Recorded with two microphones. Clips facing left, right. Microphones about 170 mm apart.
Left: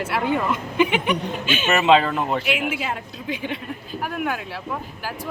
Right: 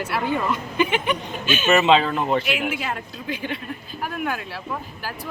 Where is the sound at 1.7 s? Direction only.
5° left (ahead or behind).